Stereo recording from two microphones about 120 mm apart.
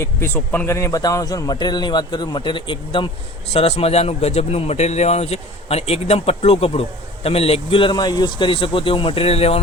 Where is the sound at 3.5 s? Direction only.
55° left (ahead or behind).